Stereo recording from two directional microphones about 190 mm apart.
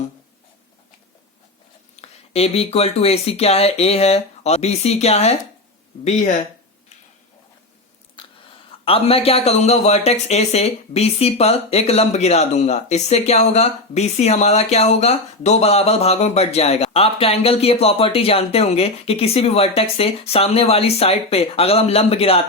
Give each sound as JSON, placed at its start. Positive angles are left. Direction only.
{"t": 2.0, "sound": "speech", "side_deg": 30}
{"t": 8.2, "sound": "a sound", "side_deg": 25}
{"t": 8.8, "sound": "speech", "side_deg": 30}